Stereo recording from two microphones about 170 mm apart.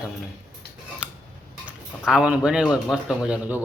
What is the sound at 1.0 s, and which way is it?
Tick-tock, 5° right (ahead or behind).